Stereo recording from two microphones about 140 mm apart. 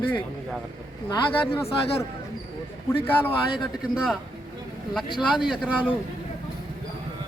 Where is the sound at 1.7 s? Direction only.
45° left (ahead or behind).